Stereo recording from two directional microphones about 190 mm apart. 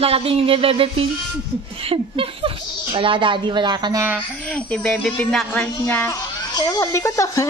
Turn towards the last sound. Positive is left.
turn(degrees=15)  # may be behind; listen again after turning